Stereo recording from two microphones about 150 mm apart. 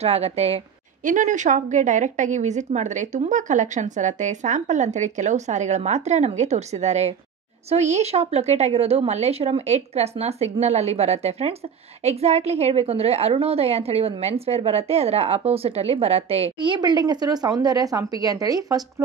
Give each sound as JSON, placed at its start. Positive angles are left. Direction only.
{"t": 0.0, "sound": "a woman's voice", "side_deg": -45}
{"t": 1.0, "sound": "a woman's voice", "side_deg": -55}